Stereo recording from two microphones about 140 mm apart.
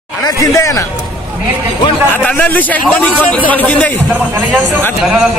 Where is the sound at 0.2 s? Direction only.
20° left (ahead or behind).